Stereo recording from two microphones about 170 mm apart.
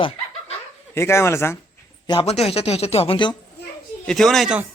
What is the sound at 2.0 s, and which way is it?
Speech, 35° left (ahead or behind).